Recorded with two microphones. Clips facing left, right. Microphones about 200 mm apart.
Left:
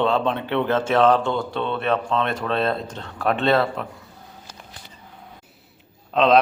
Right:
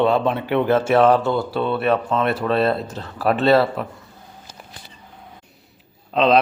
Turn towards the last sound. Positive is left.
turn(degrees=0)  # may be behind; listen again after turning